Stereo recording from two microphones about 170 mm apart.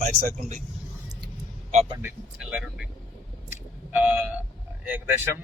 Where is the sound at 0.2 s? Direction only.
45° right (ahead or behind).